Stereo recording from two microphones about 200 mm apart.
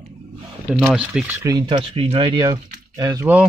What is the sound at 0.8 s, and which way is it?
Speech, 10° right (ahead or behind).